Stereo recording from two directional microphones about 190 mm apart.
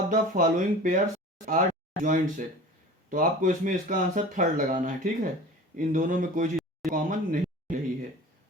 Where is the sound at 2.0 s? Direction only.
45° right (ahead or behind).